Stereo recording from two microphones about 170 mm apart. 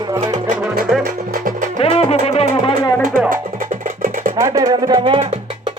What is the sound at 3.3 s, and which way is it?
Music, 55° right (ahead or behind).